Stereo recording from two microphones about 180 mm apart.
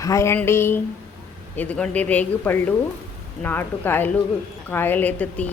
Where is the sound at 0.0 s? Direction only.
15° left (ahead or behind).